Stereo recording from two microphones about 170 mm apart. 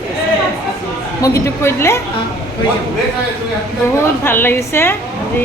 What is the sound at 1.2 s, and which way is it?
Speech, 15° left (ahead or behind).